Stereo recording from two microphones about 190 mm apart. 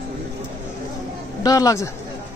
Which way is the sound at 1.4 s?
20° left (ahead or behind).